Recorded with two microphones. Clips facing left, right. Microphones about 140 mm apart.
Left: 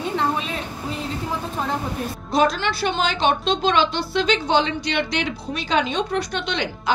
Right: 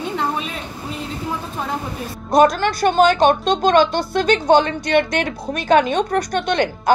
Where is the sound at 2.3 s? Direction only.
50° right (ahead or behind).